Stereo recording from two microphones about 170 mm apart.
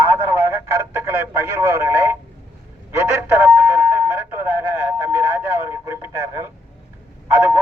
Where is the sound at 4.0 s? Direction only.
10° right (ahead or behind).